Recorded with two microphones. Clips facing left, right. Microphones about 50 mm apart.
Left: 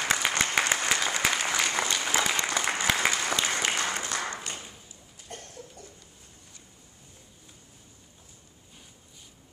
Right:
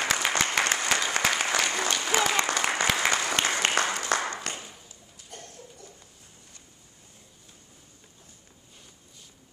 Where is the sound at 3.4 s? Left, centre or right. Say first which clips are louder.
Right 3 dB; right.